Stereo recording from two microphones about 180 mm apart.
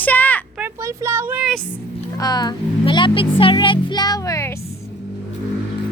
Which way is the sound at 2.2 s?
20° left (ahead or behind).